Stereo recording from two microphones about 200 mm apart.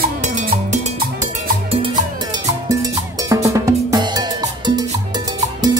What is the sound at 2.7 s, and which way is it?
Cowbell, 15° right (ahead or behind).